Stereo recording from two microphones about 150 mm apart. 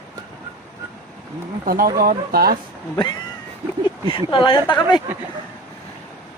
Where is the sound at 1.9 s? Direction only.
85° right.